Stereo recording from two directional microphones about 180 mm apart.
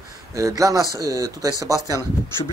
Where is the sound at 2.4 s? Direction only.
30° left (ahead or behind).